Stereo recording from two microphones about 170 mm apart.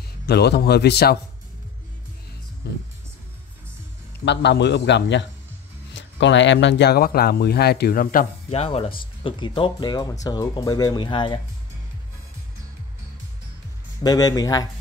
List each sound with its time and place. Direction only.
0.3 s speech: 70° left (ahead or behind)
2.6 s speech: 70° left (ahead or behind)
4.2 s a man's voice: 90° left; by 8.3 s 55° left (ahead or behind)
8.5 s speech: 35° left (ahead or behind)
14.0 s speech: 20° left (ahead or behind)